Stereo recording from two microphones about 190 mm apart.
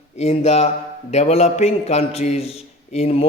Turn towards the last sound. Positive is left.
turn(degrees=30)  # may be behind; listen again after turning